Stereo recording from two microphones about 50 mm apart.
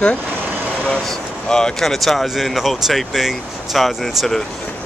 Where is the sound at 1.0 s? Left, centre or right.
Centre.